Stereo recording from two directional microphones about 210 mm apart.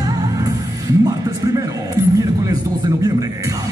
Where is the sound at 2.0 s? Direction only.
15° right (ahead or behind).